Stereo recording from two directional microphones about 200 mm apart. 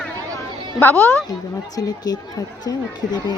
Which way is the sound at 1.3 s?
20° left (ahead or behind).